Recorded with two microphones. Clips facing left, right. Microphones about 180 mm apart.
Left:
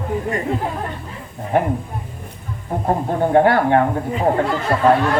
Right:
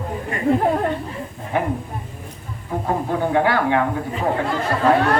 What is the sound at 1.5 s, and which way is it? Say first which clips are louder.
Speech: left 4 dB; 50° left (ahead or behind).